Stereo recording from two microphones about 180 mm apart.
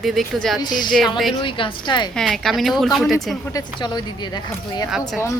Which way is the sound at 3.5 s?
20° left (ahead or behind).